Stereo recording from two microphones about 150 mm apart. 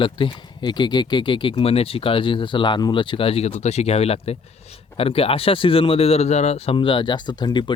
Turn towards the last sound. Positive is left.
turn(degrees=30)  # may be behind; listen again after turning